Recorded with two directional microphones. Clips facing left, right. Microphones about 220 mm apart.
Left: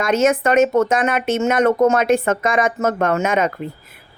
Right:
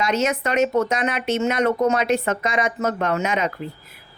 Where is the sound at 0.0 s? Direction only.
50° left (ahead or behind).